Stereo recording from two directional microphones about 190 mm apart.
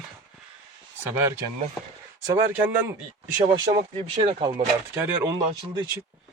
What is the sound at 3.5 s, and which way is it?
Speech, 25° right (ahead or behind).